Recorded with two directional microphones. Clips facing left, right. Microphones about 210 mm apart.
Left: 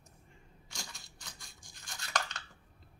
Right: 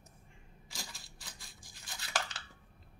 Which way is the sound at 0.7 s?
Centre (ahead or behind).